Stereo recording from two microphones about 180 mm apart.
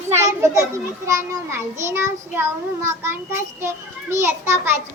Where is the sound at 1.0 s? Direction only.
15° right (ahead or behind).